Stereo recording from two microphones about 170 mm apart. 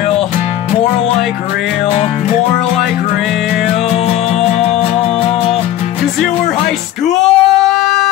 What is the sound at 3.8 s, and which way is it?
Music, 35° left (ahead or behind).